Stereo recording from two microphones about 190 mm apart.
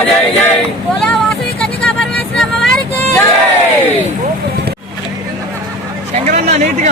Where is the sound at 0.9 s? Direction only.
5° left (ahead or behind).